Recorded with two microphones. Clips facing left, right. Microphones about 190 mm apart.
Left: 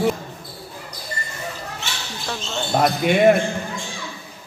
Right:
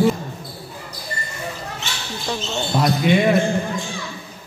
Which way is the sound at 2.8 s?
55° left (ahead or behind).